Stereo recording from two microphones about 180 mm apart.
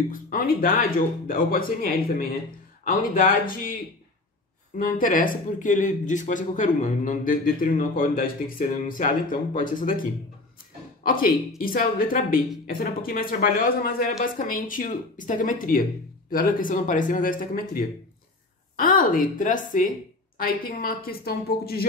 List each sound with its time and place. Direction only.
0.1 s speech: 50° left (ahead or behind)
4.7 s speech: 50° left (ahead or behind)
11.1 s a woman's voice: 55° left (ahead or behind)